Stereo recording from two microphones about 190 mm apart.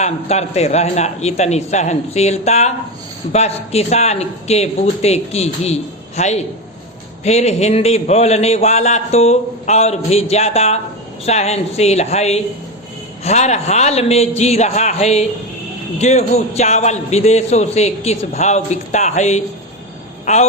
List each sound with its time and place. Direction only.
0.0 s speech: 35° left (ahead or behind)